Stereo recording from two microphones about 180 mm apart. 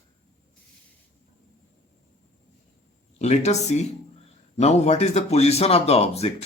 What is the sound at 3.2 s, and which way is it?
Speech, 40° left (ahead or behind).